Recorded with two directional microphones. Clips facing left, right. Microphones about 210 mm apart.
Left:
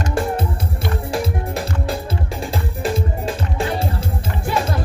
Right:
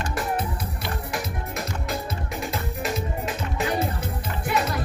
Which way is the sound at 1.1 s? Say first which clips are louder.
Left 8 dB; 30° left (ahead or behind).